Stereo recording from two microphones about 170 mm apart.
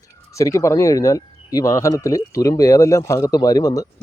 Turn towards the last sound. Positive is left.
turn(degrees=20)  # may be behind; listen again after turning